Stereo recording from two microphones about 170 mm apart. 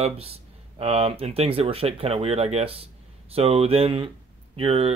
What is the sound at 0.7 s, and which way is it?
Speech, 35° right (ahead or behind).